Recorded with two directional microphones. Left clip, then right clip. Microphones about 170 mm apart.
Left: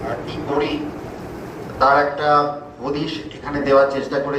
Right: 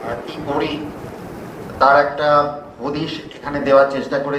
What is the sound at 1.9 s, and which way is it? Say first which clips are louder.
A man's voice: right 2 dB; 70° right (ahead or behind).